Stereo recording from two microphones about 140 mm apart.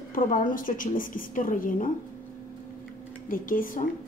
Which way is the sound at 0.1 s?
75° left (ahead or behind).